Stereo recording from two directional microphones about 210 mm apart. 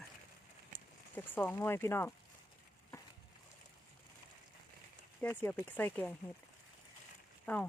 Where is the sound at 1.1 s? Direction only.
10° left (ahead or behind).